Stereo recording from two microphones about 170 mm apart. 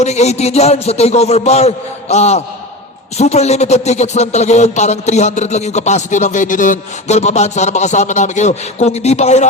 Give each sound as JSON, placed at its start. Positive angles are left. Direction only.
{"t": 0.0, "sound": "a man's voice", "side_deg": 40}